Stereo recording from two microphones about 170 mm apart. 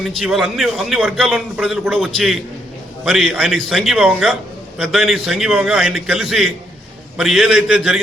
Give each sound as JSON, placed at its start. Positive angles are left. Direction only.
{"t": 0.0, "sound": "a man's voice", "side_deg": 0}